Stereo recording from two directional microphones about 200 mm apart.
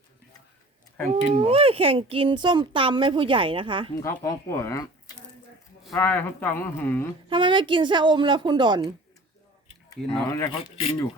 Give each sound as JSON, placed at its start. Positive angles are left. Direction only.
{"t": 1.2, "sound": "speech", "side_deg": -30}
{"t": 4.2, "sound": "speech", "side_deg": 15}
{"t": 5.8, "sound": "speech", "side_deg": 5}
{"t": 7.3, "sound": "speech", "side_deg": -25}
{"t": 10.0, "sound": "speech", "side_deg": 5}
{"t": 10.3, "sound": "speech", "side_deg": 20}